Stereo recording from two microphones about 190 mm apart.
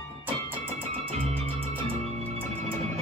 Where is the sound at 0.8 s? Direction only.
30° right (ahead or behind).